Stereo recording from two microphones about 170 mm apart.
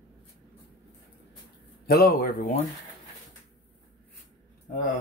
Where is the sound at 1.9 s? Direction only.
65° left (ahead or behind).